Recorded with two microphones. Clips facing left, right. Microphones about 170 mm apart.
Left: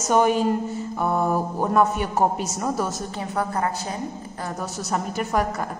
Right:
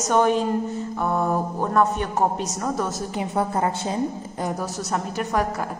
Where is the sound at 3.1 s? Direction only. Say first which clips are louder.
Right 3 dB; 25° right (ahead or behind).